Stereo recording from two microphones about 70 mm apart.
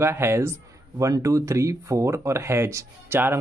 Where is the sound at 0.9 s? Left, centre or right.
Right.